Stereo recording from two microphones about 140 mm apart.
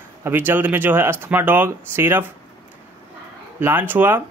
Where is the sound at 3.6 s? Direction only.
15° right (ahead or behind).